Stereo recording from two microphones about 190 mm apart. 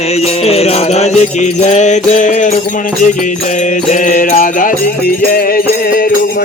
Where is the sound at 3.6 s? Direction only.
40° left (ahead or behind).